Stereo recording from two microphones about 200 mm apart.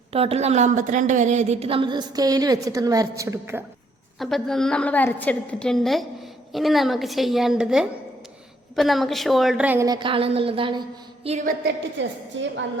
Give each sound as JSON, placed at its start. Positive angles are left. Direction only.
{"t": 0.1, "sound": "a woman's voice", "side_deg": -30}
{"t": 4.2, "sound": "a woman's voice", "side_deg": 0}
{"t": 9.8, "sound": "a woman's voice", "side_deg": -20}
{"t": 11.6, "sound": "a woman's voice", "side_deg": -65}